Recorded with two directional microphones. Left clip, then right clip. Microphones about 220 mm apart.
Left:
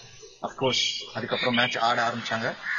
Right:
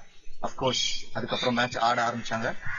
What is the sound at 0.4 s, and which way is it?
A man's voice, centre (ahead or behind).